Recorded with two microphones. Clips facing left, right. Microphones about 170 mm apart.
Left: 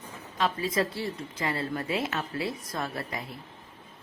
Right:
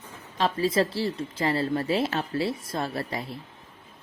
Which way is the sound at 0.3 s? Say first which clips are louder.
Right 4 dB; 30° right (ahead or behind).